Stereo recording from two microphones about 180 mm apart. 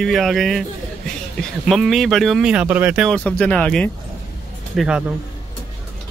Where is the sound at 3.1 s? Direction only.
5° left (ahead or behind).